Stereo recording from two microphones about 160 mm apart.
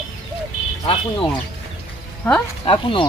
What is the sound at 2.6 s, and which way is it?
Speech, 30° left (ahead or behind).